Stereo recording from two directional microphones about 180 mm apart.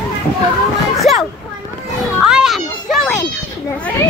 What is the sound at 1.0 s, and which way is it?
Children playing, centre (ahead or behind).